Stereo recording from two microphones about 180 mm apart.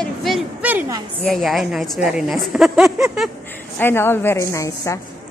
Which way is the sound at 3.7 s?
15° left (ahead or behind).